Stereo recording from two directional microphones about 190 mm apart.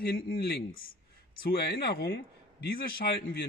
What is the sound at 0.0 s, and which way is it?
Speech, 55° left (ahead or behind).